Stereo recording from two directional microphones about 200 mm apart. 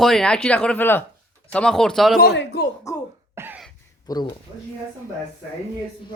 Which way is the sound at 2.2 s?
55° left (ahead or behind).